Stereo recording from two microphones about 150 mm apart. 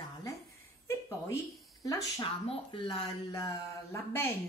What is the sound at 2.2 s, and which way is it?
Speech, 35° left (ahead or behind).